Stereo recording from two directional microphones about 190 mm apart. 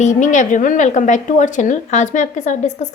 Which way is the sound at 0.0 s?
40° left (ahead or behind).